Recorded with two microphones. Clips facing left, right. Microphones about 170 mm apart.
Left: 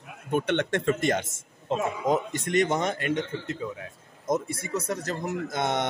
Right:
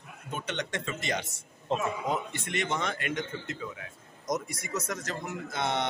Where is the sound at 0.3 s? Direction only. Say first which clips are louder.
Left 10 dB; 55° left (ahead or behind).